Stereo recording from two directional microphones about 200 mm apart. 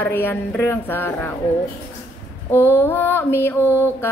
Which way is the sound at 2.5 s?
10° left (ahead or behind).